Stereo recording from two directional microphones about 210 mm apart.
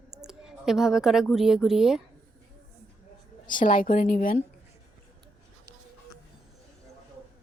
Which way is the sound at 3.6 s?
40° left (ahead or behind).